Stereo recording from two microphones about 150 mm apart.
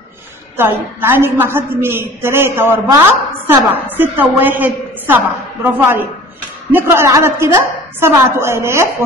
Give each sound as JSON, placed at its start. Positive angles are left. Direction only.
{"t": 0.6, "sound": "a woman's voice", "side_deg": -15}